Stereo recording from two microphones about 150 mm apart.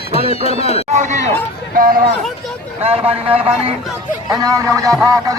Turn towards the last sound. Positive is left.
turn(degrees=-20)  # may be behind; listen again after turning